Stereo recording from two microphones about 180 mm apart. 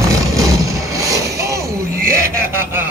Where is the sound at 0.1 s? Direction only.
20° right (ahead or behind).